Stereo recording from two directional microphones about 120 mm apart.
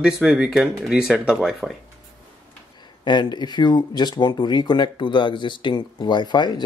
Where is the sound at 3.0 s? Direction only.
40° left (ahead or behind).